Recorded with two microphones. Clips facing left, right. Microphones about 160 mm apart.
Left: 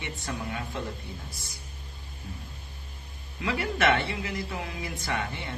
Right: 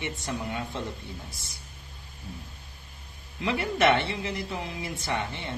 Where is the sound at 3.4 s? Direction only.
25° right (ahead or behind).